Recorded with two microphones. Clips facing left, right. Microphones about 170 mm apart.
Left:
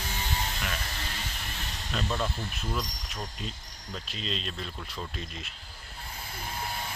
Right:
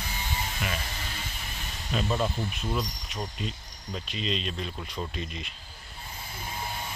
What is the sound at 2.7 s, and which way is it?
Speech, 5° right (ahead or behind).